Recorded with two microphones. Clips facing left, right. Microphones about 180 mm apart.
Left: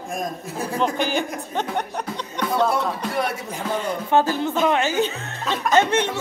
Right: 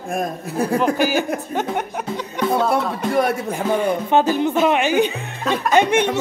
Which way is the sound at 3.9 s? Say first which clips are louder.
Even; 20° right (ahead or behind).